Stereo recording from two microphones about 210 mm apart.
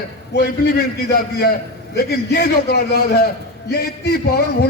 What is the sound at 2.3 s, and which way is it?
Speech, 50° left (ahead or behind).